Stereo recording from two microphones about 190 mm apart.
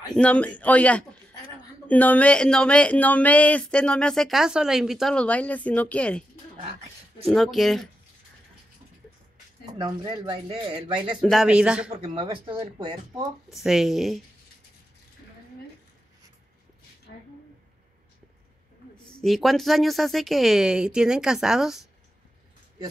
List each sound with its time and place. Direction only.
0.1 s a man's voice: 5° left (ahead or behind)
7.2 s a man's voice: 5° left (ahead or behind)
9.8 s speech: 20° right (ahead or behind)
11.1 s a man's voice: centre (ahead or behind)
11.9 s speech: 25° right (ahead or behind)
13.5 s a man's voice: centre (ahead or behind)
19.0 s a man's voice: centre (ahead or behind)